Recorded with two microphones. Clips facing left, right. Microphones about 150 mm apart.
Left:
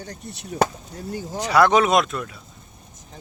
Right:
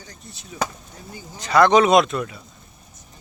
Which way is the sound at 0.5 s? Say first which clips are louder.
Left 6 dB; 60° left (ahead or behind).